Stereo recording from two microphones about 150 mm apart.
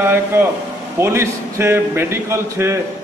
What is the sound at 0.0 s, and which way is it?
A man's voice, 15° right (ahead or behind).